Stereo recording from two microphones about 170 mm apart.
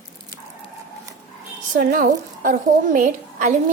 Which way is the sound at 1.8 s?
50° right (ahead or behind).